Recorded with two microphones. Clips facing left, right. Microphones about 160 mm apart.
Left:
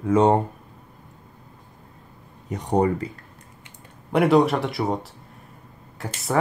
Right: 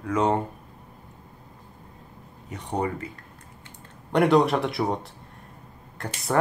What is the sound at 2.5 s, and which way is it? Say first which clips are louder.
Speech: left 7 dB; 40° left (ahead or behind).